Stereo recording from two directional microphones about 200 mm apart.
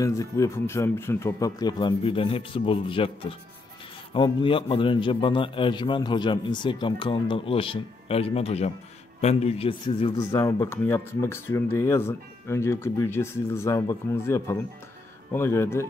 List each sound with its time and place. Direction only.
0.0 s a man's voice: 15° left (ahead or behind)
10.3 s speech: 15° left (ahead or behind)